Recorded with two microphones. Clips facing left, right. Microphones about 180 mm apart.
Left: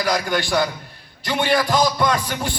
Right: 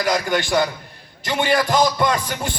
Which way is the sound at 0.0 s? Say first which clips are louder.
Right 1 dB; 20° right (ahead or behind).